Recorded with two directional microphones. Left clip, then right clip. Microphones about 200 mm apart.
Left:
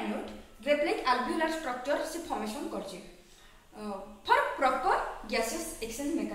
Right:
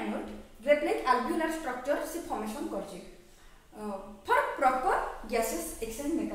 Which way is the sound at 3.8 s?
5° right (ahead or behind).